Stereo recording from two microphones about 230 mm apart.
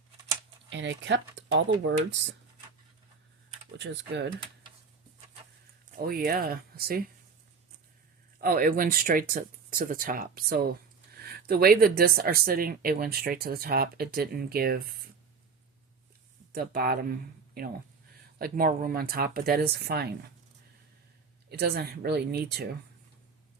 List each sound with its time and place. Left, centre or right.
0.7 s speech: right
3.8 s speech: right
6.0 s speech: right
8.4 s speech: right
16.5 s speech: right
21.5 s speech: right